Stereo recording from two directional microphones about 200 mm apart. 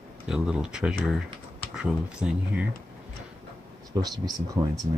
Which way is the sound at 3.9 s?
20° right (ahead or behind).